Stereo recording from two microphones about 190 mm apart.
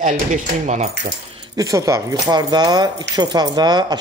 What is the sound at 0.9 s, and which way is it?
Speech, 65° right (ahead or behind).